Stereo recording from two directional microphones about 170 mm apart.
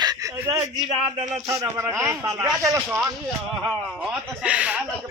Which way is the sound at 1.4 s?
20° right (ahead or behind).